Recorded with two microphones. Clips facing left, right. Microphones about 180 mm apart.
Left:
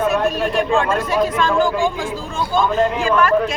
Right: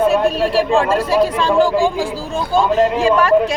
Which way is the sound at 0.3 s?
30° right (ahead or behind).